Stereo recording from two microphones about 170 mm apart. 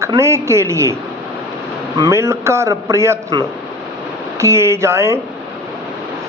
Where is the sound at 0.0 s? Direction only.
15° right (ahead or behind).